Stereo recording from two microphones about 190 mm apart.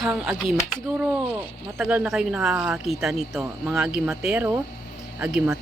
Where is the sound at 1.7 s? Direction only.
5° right (ahead or behind).